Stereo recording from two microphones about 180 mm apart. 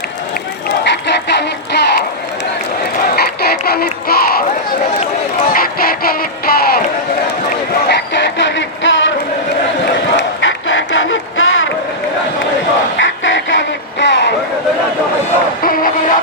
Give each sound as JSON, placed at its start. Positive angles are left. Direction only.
{"t": 0.9, "sound": "a sound", "side_deg": 75}
{"t": 3.2, "sound": "speech", "side_deg": 60}
{"t": 5.5, "sound": "music", "side_deg": 55}
{"t": 7.9, "sound": "music", "side_deg": 75}
{"t": 9.8, "sound": "crowd", "side_deg": 85}
{"t": 13.0, "sound": "a sound", "side_deg": 90}
{"t": 15.6, "sound": "music", "side_deg": 50}